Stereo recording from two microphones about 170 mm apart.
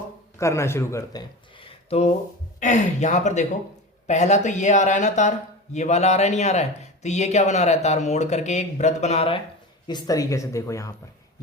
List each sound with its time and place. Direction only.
0.3 s a man's voice: 15° left (ahead or behind)
1.6 s a sound: 35° left (ahead or behind)
2.6 s speech: 45° left (ahead or behind)
9.8 s speech: 25° left (ahead or behind)